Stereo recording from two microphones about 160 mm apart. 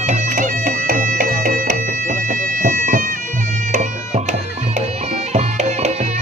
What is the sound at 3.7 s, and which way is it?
Music, 50° right (ahead or behind).